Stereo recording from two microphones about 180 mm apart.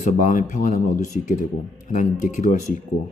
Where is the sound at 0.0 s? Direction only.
45° left (ahead or behind).